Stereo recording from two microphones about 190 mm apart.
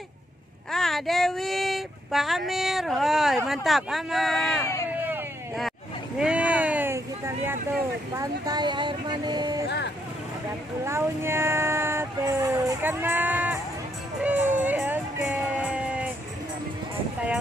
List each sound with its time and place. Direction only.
0.7 s speech: centre (ahead or behind)
6.1 s a sound: 5° right (ahead or behind)
8.2 s speech: 20° right (ahead or behind)
10.8 s speech: 15° right (ahead or behind)
14.2 s music: 10° right (ahead or behind)